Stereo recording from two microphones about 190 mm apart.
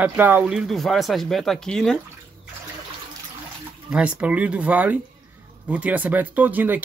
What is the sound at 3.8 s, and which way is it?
Speech, 5° right (ahead or behind).